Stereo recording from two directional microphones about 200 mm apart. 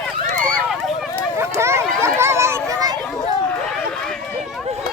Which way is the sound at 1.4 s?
15° right (ahead or behind).